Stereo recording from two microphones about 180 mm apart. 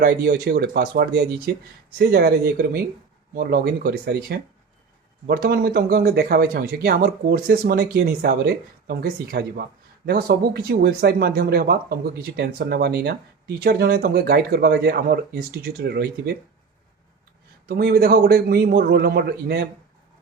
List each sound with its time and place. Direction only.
0.0 s speech: 60° right (ahead or behind)
17.7 s speech: 60° right (ahead or behind)